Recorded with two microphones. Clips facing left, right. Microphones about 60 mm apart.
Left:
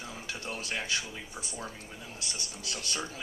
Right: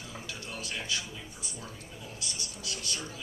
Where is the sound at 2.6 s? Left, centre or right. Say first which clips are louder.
Left 2 dB; left.